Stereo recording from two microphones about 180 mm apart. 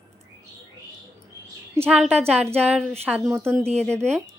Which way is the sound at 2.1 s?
35° right (ahead or behind).